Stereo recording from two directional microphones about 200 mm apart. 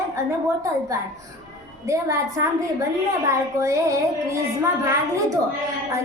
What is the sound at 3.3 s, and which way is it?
A woman's voice, 15° right (ahead or behind).